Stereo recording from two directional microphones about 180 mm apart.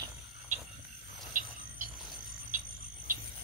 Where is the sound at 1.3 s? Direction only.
50° right (ahead or behind).